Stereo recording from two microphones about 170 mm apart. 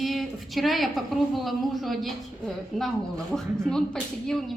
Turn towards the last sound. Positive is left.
turn(degrees=0)  # may be behind; listen again after turning